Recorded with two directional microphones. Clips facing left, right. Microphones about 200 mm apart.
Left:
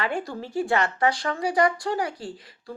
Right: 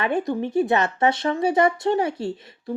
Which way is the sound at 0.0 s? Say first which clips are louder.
Right 6 dB; 20° right (ahead or behind).